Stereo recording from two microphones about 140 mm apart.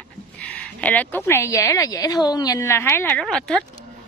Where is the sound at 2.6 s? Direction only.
15° left (ahead or behind).